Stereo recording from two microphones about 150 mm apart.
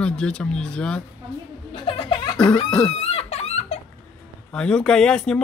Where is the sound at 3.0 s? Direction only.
40° left (ahead or behind).